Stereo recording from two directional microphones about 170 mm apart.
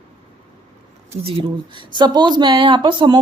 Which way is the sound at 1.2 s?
30° right (ahead or behind).